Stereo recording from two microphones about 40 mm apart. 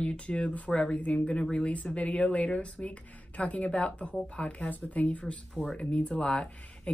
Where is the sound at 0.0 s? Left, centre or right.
Left.